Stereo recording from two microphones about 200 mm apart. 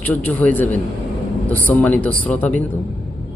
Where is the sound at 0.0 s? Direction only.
10° left (ahead or behind).